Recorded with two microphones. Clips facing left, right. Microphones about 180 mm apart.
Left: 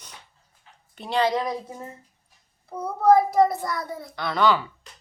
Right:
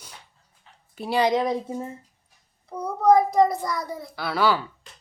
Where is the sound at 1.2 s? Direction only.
25° right (ahead or behind).